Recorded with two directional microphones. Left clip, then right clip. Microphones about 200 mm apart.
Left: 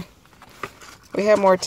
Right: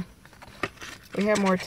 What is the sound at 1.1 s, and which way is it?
Speech, 35° left (ahead or behind).